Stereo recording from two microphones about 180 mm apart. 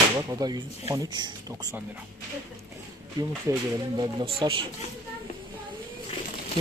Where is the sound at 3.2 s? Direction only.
20° right (ahead or behind).